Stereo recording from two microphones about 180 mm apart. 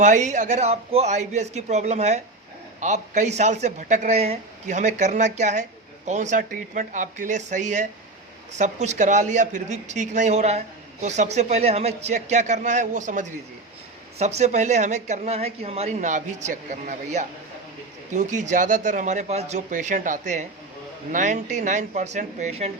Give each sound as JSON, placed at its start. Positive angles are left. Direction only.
{"t": 0.0, "sound": "a woman's voice", "side_deg": -40}